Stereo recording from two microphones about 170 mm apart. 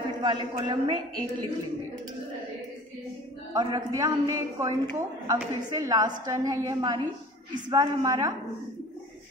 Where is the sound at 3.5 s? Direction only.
25° right (ahead or behind).